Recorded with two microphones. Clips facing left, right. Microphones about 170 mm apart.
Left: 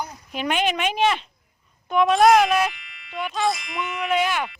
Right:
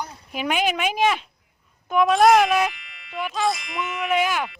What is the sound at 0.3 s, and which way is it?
Speech, 5° right (ahead or behind).